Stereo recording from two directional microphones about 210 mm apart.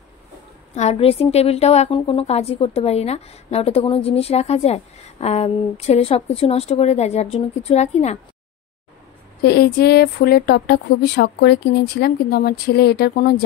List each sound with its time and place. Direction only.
0.7 s a woman's voice: 30° left (ahead or behind)
9.4 s speech: 50° left (ahead or behind)